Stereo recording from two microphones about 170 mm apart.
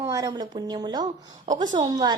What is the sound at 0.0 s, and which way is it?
A woman's voice, 20° right (ahead or behind).